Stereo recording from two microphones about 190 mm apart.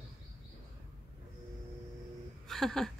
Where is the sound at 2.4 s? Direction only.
Centre (ahead or behind).